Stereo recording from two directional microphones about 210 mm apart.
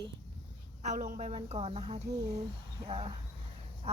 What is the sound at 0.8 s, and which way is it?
Speech, 35° right (ahead or behind).